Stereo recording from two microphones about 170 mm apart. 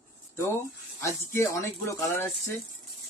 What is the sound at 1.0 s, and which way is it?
Speech, 15° left (ahead or behind).